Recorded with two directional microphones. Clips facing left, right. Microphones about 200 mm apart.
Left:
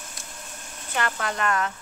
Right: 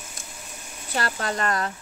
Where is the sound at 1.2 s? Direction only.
35° right (ahead or behind).